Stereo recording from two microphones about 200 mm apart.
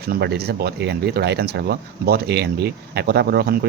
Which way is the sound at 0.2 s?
55° right (ahead or behind).